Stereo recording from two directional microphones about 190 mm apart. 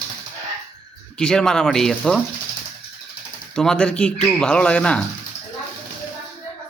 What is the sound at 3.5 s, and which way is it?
Speech, 5° left (ahead or behind).